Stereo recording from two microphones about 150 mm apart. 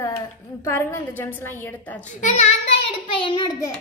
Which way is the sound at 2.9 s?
35° left (ahead or behind).